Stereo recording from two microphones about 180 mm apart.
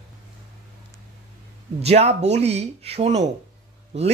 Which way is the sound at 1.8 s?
35° right (ahead or behind).